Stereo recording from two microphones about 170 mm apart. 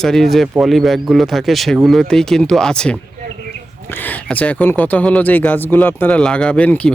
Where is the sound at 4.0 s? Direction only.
10° left (ahead or behind).